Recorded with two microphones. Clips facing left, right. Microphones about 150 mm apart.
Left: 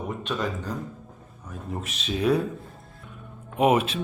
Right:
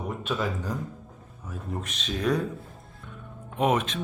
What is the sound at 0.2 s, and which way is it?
A man's voice, 5° right (ahead or behind).